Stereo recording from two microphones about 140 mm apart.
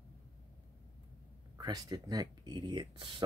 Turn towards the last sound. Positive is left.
turn(degrees=-35)  # may be behind; listen again after turning